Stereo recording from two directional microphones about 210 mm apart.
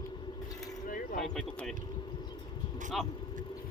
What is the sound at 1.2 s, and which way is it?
Speech, centre (ahead or behind).